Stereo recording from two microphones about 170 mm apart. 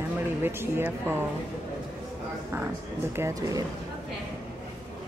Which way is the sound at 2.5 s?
15° right (ahead or behind).